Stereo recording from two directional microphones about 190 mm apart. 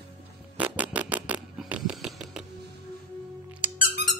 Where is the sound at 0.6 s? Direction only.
5° right (ahead or behind).